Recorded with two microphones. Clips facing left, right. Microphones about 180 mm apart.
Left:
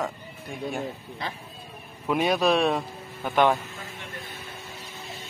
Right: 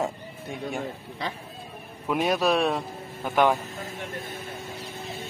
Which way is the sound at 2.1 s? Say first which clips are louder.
Left 1 dB; 5° right (ahead or behind).